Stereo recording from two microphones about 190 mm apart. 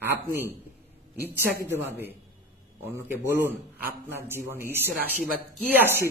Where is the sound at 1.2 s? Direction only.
10° right (ahead or behind).